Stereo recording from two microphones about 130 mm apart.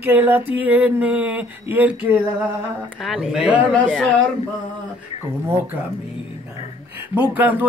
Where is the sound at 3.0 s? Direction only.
5° right (ahead or behind).